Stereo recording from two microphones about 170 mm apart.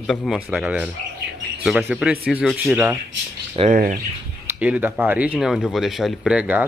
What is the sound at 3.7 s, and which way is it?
Speech, 55° right (ahead or behind).